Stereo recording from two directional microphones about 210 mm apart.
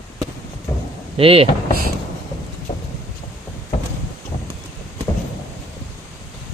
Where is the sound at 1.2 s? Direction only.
25° right (ahead or behind).